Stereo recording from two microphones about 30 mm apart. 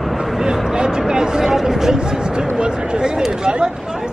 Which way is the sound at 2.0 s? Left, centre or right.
Right.